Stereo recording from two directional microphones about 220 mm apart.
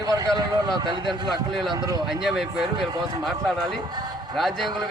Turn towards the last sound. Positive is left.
turn(degrees=0)  # may be behind; listen again after turning